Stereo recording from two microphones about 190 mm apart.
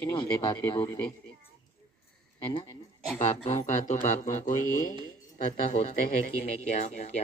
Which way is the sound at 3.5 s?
40° left (ahead or behind).